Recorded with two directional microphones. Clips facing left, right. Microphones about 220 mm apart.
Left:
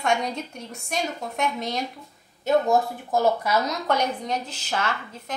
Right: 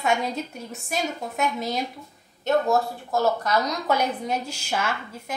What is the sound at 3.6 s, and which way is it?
A woman's voice, centre (ahead or behind).